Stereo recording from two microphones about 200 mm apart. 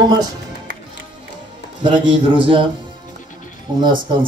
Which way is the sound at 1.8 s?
25° right (ahead or behind).